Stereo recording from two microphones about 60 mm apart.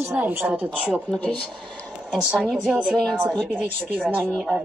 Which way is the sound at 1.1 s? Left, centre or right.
Centre.